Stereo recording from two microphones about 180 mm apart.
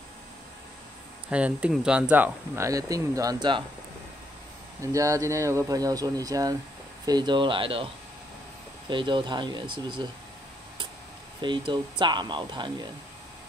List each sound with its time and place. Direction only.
1.3 s speech: 5° right (ahead or behind); by 3.6 s 25° right (ahead or behind)
4.9 s speech: 20° right (ahead or behind)
11.4 s speech: 25° right (ahead or behind)